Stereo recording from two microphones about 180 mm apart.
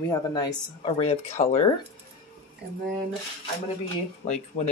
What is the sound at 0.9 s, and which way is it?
Speech, 35° left (ahead or behind).